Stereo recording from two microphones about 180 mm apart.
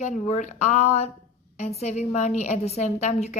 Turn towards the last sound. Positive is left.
turn(degrees=40)  # may be behind; listen again after turning